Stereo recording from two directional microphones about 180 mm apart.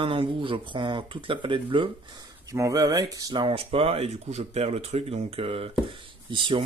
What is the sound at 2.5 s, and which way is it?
Speech, 20° right (ahead or behind).